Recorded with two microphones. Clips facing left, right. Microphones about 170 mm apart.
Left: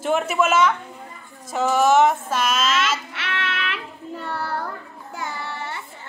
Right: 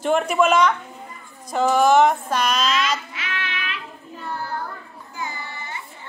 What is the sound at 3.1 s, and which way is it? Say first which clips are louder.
Child singing: left 3 dB; 75° left (ahead or behind).